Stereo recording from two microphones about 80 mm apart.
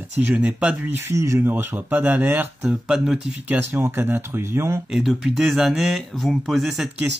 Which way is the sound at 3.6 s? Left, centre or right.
Right.